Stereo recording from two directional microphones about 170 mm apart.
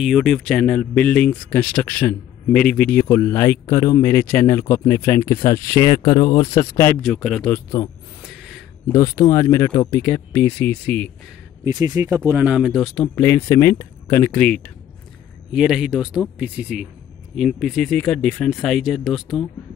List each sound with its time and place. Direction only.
0.0 s speech: centre (ahead or behind); by 7.0 s 15° left (ahead or behind)
7.0 s speech: 5° left (ahead or behind)
7.5 s speech: 20° left (ahead or behind)
8.5 s a sound: 5° left (ahead or behind)
8.9 s speech: 15° left (ahead or behind)
11.6 s speech: 20° right (ahead or behind)
12.2 s speech: 10° right (ahead or behind); by 14.7 s 5° left (ahead or behind)
15.5 s speech: 5° right (ahead or behind)